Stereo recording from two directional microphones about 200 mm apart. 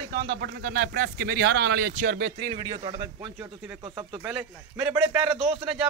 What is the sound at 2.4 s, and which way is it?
A man's voice, 20° right (ahead or behind).